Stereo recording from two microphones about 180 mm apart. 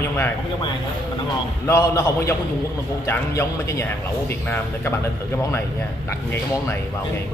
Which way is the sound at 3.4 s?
15° left (ahead or behind).